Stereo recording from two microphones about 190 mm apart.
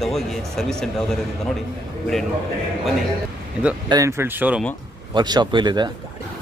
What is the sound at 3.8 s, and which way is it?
Speech, 20° right (ahead or behind).